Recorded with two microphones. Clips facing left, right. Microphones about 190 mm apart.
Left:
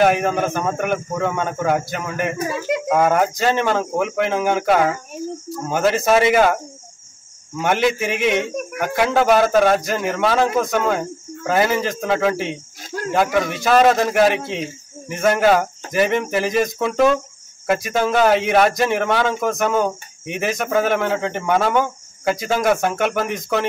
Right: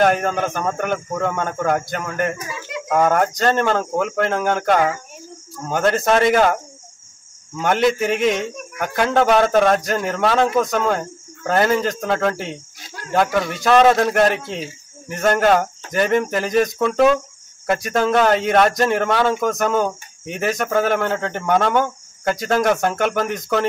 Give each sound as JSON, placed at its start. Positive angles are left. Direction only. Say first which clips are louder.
{"t": 0.0, "sound": "speech", "louder": "left 1 dB", "side_deg": 5}
{"t": 2.3, "sound": "speech", "louder": "left 8 dB", "side_deg": 50}
{"t": 2.9, "sound": "speech", "louder": "right 1 dB", "side_deg": 5}
{"t": 7.6, "sound": "speech", "louder": "right 1 dB", "side_deg": 0}